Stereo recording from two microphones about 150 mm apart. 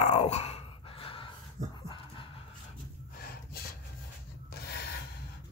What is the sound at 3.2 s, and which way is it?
Snort, 90° left.